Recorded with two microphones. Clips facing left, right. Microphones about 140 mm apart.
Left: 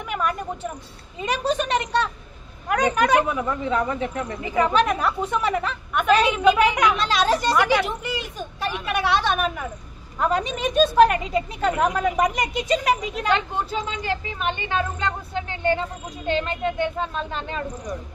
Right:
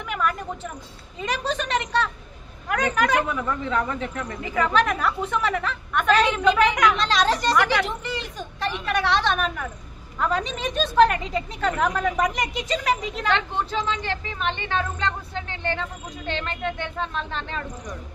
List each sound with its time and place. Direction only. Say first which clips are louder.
0.1 s speech: left 1 dB; 20° left (ahead or behind)
2.9 s speech: left 2 dB; 20° left (ahead or behind)